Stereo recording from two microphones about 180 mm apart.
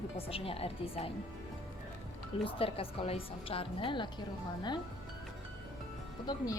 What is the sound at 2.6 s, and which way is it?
A woman's voice, 30° left (ahead or behind).